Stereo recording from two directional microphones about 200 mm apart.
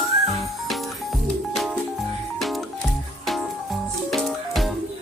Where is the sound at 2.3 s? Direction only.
Centre (ahead or behind).